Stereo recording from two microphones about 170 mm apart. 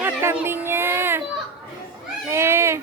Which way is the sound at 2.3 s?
15° right (ahead or behind).